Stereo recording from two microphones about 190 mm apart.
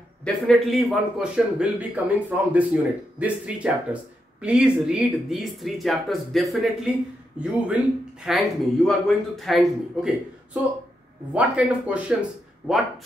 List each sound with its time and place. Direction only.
0.2 s a man's voice: centre (ahead or behind)